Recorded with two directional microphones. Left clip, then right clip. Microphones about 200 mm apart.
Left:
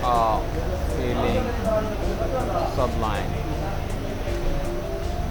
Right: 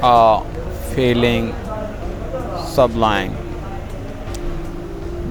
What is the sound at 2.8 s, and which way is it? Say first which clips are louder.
Speech: right 11 dB; 45° right (ahead or behind).